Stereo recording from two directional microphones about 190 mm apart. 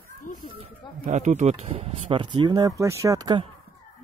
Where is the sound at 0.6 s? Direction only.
40° right (ahead or behind); by 3.5 s 20° right (ahead or behind).